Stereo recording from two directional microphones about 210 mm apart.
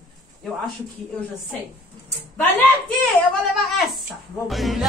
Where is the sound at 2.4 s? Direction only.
10° left (ahead or behind).